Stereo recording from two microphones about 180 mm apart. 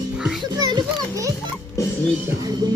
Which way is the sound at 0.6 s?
25° right (ahead or behind).